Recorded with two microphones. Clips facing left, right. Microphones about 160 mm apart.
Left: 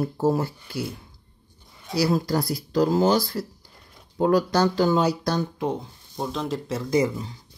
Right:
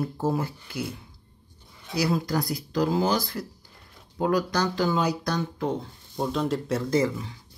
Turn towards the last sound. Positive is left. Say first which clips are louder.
# left 2 dB
turn(degrees=15)  # may be behind; listen again after turning